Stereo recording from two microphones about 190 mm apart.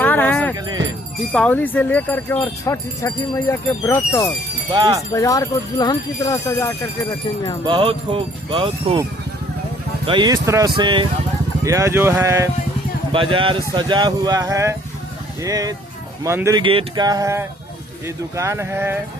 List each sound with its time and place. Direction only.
0.0 s music: 10° left (ahead or behind)
1.3 s speech: 5° left (ahead or behind)
4.7 s speech: 20° right (ahead or behind)
5.1 s speech: 15° left (ahead or behind)
7.6 s speech: 25° right (ahead or behind)
10.1 s speech: 20° right (ahead or behind)
13.1 s speech: 25° right (ahead or behind)